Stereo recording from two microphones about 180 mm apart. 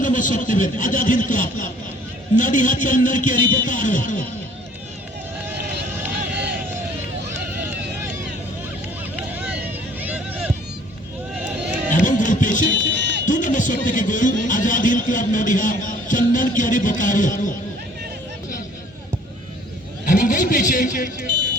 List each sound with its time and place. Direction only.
0.0 s a man's voice: 45° left (ahead or behind)
7.5 s a sound: 10° right (ahead or behind)
9.1 s vehicle: 5° right (ahead or behind)
10.0 s a sound: 10° right (ahead or behind)
11.9 s music: 45° left (ahead or behind)
12.9 s music: 75° right (ahead or behind)
13.2 s music: 45° left (ahead or behind)
20.1 s vehicle: 45° left (ahead or behind)